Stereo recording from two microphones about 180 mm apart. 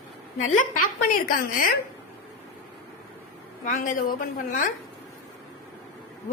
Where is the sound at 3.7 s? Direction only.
50° left (ahead or behind).